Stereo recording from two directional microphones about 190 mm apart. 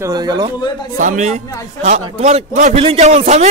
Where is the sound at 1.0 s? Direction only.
40° right (ahead or behind).